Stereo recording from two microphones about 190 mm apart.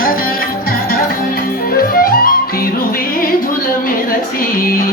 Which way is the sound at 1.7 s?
50° left (ahead or behind).